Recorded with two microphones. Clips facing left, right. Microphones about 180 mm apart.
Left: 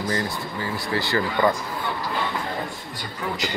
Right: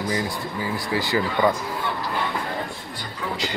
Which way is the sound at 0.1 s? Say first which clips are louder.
Right 1 dB; 10° right (ahead or behind).